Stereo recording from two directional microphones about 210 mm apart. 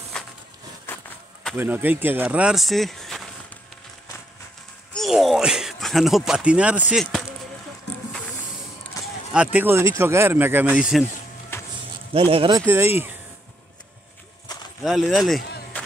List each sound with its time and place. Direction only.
0.1 s a sound: 5° left (ahead or behind)
0.9 s walk: 10° left (ahead or behind)
1.4 s speech: 5° right (ahead or behind)
4.9 s speech: centre (ahead or behind)
9.0 s speech: 5° right (ahead or behind)
11.5 s a sound: 10° left (ahead or behind)
12.1 s speech: 25° right (ahead or behind)
12.6 s speech: 10° right (ahead or behind)
14.8 s speech: centre (ahead or behind)